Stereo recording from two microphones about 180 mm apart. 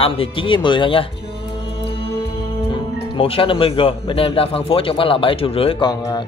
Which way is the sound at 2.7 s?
30° left (ahead or behind).